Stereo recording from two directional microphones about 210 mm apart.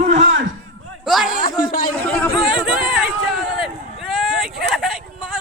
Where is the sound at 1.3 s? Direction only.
40° left (ahead or behind).